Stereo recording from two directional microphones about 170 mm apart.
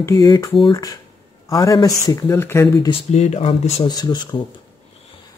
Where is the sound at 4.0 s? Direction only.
25° left (ahead or behind).